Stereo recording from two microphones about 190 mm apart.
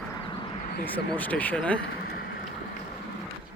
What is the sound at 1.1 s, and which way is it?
Speech, 10° left (ahead or behind).